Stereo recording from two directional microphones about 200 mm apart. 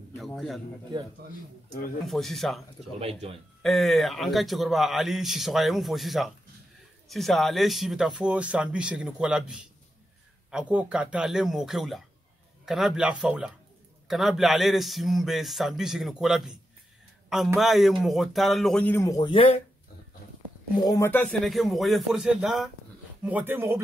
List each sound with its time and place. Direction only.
2.0 s a man's voice: centre (ahead or behind)
3.0 s speech: 30° right (ahead or behind)
3.6 s a man's voice: centre (ahead or behind)
17.6 s a man's voice: centre (ahead or behind); by 19.6 s 25° left (ahead or behind)
20.8 s a man's voice: 15° left (ahead or behind); by 23.8 s 10° right (ahead or behind)